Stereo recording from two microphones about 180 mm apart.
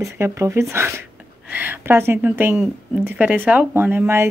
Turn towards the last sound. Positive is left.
turn(degrees=-10)  # may be behind; listen again after turning